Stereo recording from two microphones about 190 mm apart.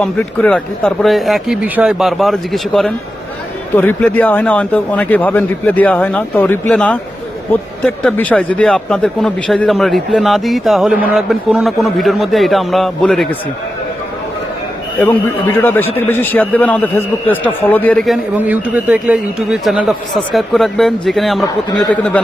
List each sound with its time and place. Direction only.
0.0 s a man's voice: 5° left (ahead or behind)
15.0 s a man's voice: 10° left (ahead or behind)